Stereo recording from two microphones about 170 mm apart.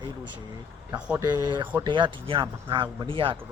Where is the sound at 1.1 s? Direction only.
25° right (ahead or behind).